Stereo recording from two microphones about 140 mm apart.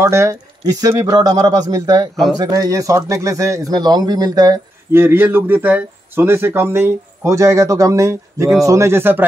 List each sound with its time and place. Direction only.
0.0 s speech: 20° right (ahead or behind)
4.9 s speech: 15° right (ahead or behind)